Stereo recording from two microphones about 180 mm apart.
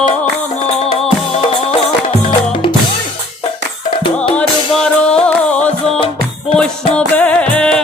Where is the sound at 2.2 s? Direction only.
30° left (ahead or behind).